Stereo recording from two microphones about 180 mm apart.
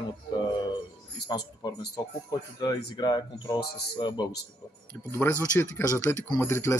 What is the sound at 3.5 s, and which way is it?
Speech, 60° left (ahead or behind).